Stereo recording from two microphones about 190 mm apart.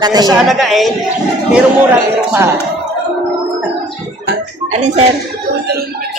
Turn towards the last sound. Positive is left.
turn(degrees=-35)  # may be behind; listen again after turning